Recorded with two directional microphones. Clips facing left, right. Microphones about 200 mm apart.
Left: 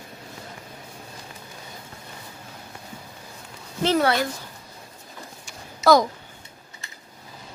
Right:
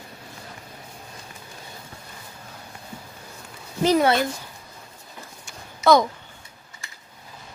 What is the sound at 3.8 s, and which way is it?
Speech, 15° right (ahead or behind).